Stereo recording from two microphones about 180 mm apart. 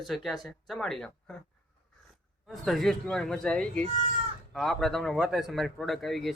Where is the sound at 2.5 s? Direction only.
Centre (ahead or behind).